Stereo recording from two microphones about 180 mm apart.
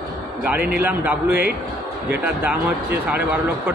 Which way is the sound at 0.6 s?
60° right (ahead or behind).